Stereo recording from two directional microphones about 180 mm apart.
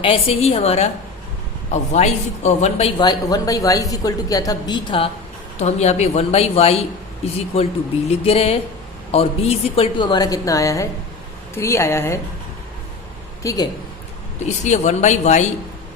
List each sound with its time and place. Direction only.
0.0 s a woman's voice: 35° left (ahead or behind)
3.0 s a woman's voice: 20° left (ahead or behind)
5.5 s a woman's voice: 40° left (ahead or behind); by 12.2 s 15° left (ahead or behind)
13.4 s speech: 20° left (ahead or behind)
14.4 s a woman's voice: 40° left (ahead or behind)